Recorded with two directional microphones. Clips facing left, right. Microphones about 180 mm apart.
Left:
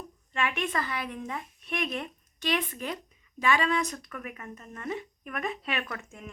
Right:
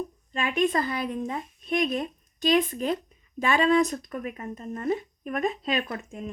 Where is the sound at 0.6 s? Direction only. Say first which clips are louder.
Right 7 dB; 30° right (ahead or behind).